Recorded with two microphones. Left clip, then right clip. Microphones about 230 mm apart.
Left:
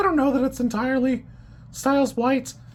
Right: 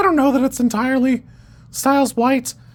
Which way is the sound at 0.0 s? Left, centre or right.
Right.